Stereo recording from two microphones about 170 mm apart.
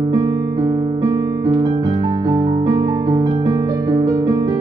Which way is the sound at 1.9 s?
30° right (ahead or behind).